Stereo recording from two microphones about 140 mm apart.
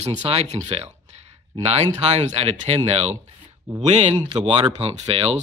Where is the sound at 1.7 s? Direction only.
45° right (ahead or behind).